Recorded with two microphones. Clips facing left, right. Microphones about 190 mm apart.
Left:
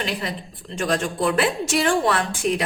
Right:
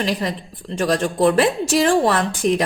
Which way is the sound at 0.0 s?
40° right (ahead or behind).